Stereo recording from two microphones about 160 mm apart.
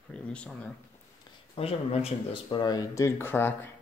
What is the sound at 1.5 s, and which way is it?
Speech, 35° left (ahead or behind).